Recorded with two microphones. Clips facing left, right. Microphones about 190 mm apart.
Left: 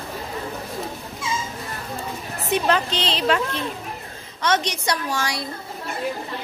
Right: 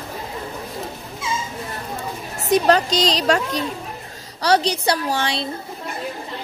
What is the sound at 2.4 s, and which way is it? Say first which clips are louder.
A woman's voice: right 5 dB; 40° right (ahead or behind).